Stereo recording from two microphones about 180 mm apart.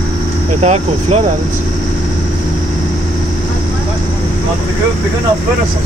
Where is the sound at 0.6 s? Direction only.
35° right (ahead or behind).